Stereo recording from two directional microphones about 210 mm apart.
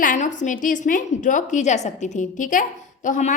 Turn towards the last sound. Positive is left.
turn(degrees=35)  # may be behind; listen again after turning